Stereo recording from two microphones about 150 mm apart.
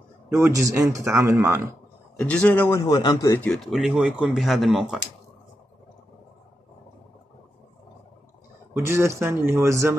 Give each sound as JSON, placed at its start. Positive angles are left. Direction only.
{"t": 0.3, "sound": "speech", "side_deg": -20}
{"t": 2.1, "sound": "speech", "side_deg": 10}
{"t": 2.9, "sound": "speech", "side_deg": 25}
{"t": 3.3, "sound": "speech", "side_deg": 5}
{"t": 8.7, "sound": "speech", "side_deg": -15}